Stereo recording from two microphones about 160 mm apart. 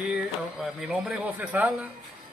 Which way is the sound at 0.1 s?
Centre (ahead or behind).